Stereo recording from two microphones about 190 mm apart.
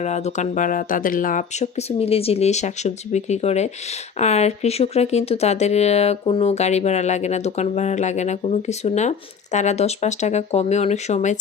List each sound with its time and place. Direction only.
0.0 s speech: 35° left (ahead or behind)